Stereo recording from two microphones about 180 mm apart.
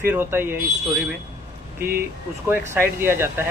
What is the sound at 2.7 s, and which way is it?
Speech, 15° right (ahead or behind).